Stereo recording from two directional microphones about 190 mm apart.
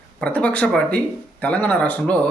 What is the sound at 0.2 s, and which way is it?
Speech, 5° left (ahead or behind).